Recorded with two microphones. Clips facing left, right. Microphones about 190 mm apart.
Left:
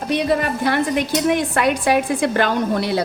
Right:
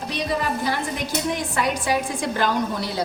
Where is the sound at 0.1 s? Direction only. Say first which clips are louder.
Left 6 dB; 60° left (ahead or behind).